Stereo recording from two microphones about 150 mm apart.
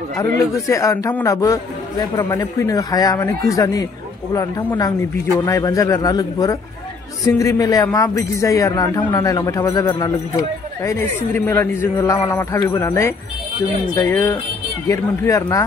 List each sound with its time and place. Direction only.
0.6 s a man's voice: 20° left (ahead or behind)